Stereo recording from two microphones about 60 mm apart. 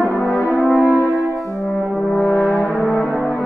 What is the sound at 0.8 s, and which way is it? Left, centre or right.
French horn, left.